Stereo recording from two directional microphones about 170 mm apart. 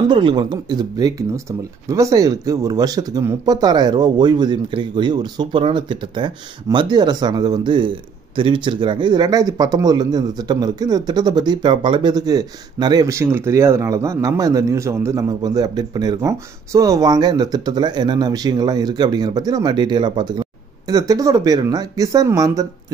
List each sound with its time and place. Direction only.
0.1 s speech: 30° right (ahead or behind)